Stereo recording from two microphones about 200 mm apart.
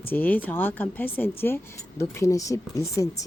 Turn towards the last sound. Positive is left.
turn(degrees=15)  # may be behind; listen again after turning